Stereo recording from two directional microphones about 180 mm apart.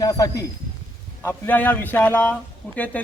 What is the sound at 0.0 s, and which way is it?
A man's voice, 20° left (ahead or behind).